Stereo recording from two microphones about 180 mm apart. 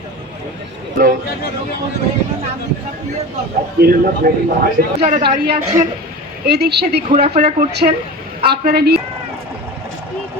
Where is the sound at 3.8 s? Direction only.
55° right (ahead or behind).